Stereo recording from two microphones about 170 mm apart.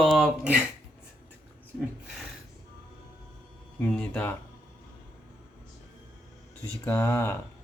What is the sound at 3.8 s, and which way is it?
Speech, 10° left (ahead or behind).